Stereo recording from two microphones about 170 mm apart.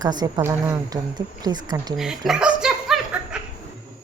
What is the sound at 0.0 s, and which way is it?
A woman's voice, 25° right (ahead or behind).